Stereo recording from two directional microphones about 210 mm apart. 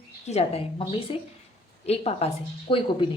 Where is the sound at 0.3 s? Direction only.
30° left (ahead or behind).